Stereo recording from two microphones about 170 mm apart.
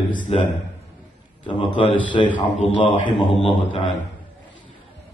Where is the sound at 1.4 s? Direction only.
30° left (ahead or behind).